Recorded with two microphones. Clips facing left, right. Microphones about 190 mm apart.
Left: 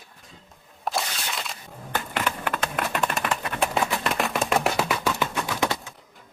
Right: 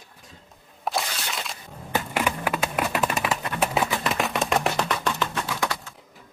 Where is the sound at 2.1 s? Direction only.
10° right (ahead or behind); by 5.7 s 10° left (ahead or behind).